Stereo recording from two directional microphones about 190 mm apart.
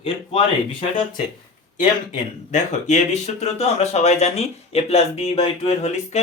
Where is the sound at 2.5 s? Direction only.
40° left (ahead or behind).